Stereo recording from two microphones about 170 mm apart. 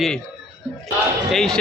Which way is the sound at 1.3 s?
5° left (ahead or behind).